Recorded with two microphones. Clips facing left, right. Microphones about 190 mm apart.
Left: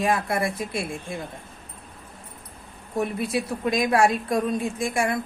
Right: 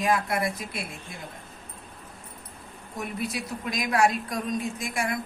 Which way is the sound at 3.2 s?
25° left (ahead or behind).